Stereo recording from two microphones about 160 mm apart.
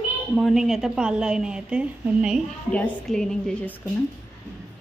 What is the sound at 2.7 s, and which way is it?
A woman's voice, 5° left (ahead or behind).